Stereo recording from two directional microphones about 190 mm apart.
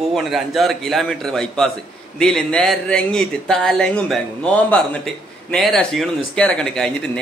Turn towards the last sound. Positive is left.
turn(degrees=5)  # may be behind; listen again after turning